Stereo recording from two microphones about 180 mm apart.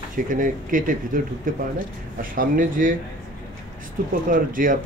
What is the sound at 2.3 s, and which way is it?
Speech, 50° right (ahead or behind).